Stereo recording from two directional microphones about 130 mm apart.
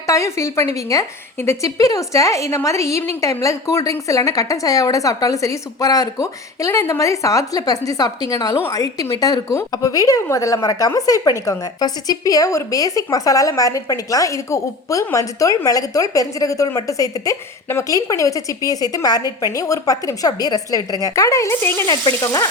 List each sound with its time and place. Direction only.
0.1 s a woman's voice: 25° left (ahead or behind)